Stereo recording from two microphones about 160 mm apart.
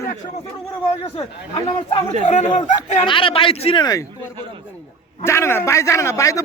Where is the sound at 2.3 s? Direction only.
45° left (ahead or behind).